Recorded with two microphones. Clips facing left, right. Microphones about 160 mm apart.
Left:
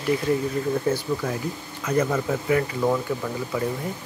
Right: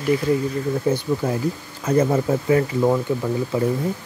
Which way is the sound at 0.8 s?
20° right (ahead or behind).